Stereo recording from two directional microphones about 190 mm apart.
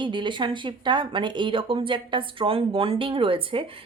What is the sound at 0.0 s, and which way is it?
Speech, 25° right (ahead or behind).